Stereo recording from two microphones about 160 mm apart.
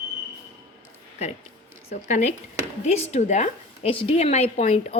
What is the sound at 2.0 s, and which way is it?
A woman's voice, 50° left (ahead or behind).